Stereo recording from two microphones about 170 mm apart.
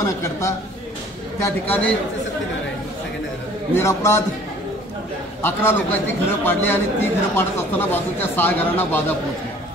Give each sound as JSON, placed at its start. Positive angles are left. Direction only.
{"t": 0.0, "sound": "a man's voice", "side_deg": 15}
{"t": 3.7, "sound": "a man's voice", "side_deg": 15}
{"t": 5.4, "sound": "a man's voice", "side_deg": 15}